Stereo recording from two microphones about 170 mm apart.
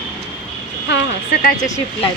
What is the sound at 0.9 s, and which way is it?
Speech, 90° left.